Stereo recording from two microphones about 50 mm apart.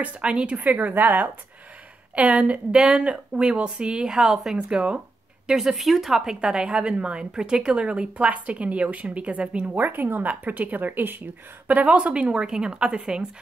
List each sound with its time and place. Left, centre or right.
0.0 s a woman's voice: right
0.6 s a woman's voice: right
2.1 s a woman's voice: right; by 4.6 s centre
4.6 s a woman's voice: right
9.8 s a woman's voice: right; by 13.3 s centre